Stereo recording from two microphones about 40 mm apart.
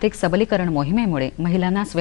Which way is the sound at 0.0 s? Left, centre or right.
Centre.